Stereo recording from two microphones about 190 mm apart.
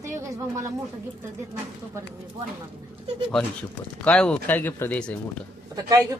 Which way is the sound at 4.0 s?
5° left (ahead or behind).